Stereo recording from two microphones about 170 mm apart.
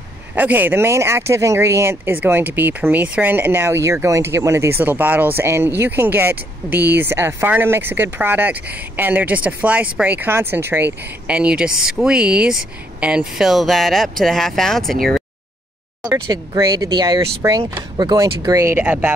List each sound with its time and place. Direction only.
0.3 s speech: 10° right (ahead or behind)
16.0 s speech: 20° right (ahead or behind)